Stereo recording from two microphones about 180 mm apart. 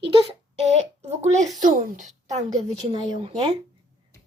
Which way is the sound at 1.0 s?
40° right (ahead or behind).